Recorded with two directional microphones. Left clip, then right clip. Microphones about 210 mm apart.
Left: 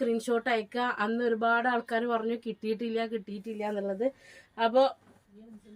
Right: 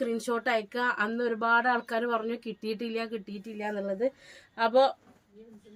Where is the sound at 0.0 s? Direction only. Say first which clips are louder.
Left 1 dB; 25° right (ahead or behind).